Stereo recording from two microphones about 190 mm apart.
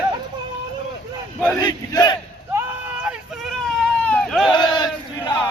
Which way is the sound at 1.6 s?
20° left (ahead or behind).